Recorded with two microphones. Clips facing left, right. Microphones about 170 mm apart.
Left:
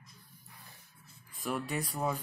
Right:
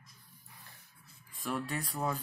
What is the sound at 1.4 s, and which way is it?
Speech, 5° left (ahead or behind).